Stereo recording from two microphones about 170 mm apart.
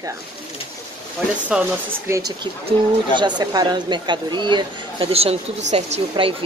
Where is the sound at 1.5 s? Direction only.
5° right (ahead or behind).